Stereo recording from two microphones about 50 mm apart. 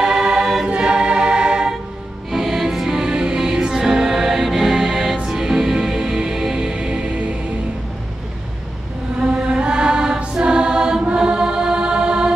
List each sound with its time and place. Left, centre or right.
0.0 s music: centre
0.7 s choir: centre
2.3 s music: centre
9.2 s music: centre